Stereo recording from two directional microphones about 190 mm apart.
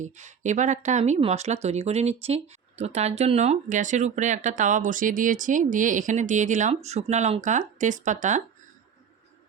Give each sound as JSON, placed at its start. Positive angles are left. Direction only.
{"t": 0.0, "sound": "speech", "side_deg": -40}